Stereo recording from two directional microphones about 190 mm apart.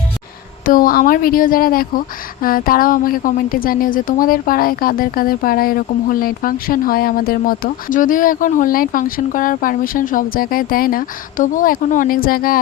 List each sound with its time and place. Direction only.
0.6 s a woman's voice: 50° left (ahead or behind)